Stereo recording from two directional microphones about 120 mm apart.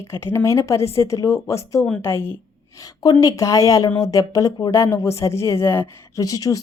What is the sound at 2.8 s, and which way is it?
A woman's voice, 30° left (ahead or behind).